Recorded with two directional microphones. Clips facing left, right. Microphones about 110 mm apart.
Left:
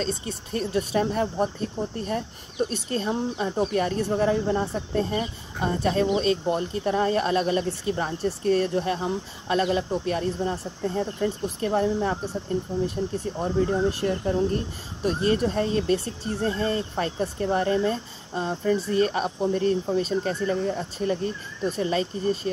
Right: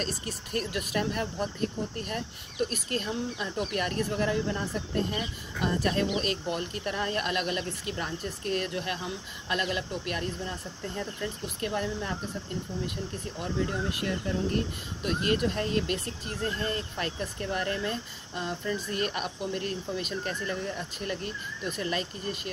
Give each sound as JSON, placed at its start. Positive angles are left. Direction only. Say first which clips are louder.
{"t": 0.1, "sound": "speech", "louder": "left 4 dB", "side_deg": 25}